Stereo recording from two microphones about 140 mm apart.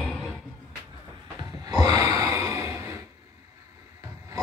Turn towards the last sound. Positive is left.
turn(degrees=-20)  # may be behind; listen again after turning